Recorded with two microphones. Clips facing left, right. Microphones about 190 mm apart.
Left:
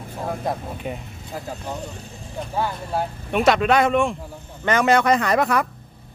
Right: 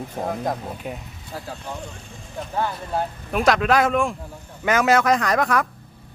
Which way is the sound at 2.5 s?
10° left (ahead or behind).